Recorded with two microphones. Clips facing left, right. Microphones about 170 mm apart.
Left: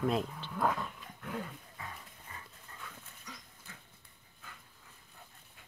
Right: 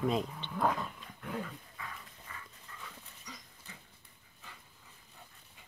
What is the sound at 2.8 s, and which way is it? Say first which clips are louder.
Dog: left 1 dB; centre (ahead or behind).